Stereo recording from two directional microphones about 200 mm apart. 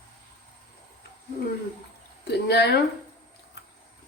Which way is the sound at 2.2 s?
55° left (ahead or behind).